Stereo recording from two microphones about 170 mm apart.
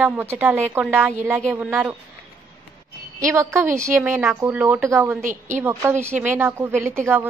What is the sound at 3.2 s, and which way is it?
A woman's voice, 15° right (ahead or behind).